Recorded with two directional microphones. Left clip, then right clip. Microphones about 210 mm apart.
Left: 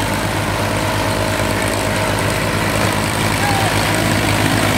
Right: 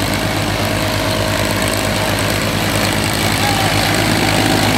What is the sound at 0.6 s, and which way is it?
Vehicle, 5° right (ahead or behind).